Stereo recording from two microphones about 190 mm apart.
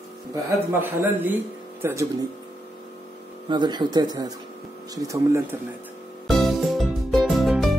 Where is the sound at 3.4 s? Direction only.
25° right (ahead or behind).